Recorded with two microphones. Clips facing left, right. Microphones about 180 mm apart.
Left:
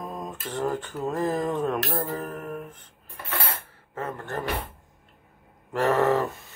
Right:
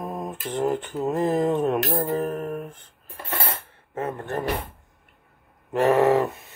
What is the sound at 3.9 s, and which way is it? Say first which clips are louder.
Music: right 4 dB; 20° right (ahead or behind).